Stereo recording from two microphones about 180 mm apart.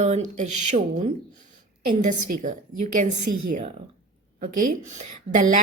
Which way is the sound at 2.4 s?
45° right (ahead or behind).